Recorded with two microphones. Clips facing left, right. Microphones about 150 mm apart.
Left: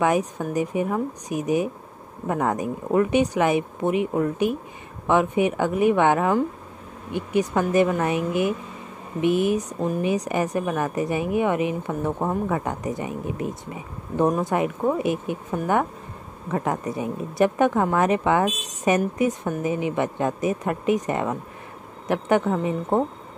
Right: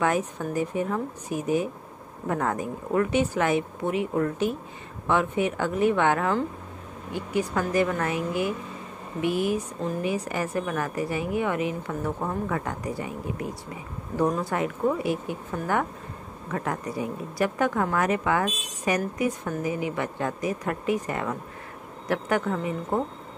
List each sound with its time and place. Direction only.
0.0 s a woman's voice: 15° left (ahead or behind)